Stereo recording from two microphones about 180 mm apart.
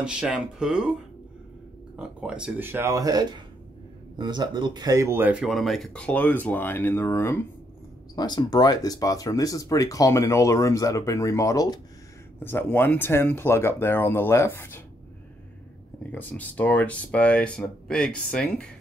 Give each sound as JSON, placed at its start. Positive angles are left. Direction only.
{"t": 0.0, "sound": "speech", "side_deg": -5}
{"t": 2.0, "sound": "speech", "side_deg": -5}
{"t": 16.0, "sound": "speech", "side_deg": 10}